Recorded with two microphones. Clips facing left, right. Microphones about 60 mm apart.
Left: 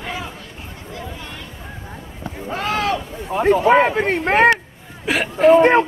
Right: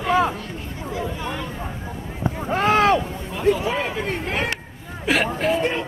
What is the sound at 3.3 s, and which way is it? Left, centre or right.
Speech, left.